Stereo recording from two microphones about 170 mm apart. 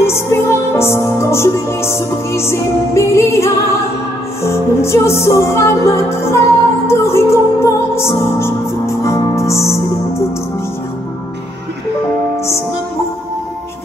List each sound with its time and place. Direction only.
0.0 s music: 15° left (ahead or behind)